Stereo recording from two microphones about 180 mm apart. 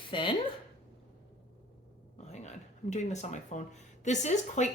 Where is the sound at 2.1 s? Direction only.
40° left (ahead or behind).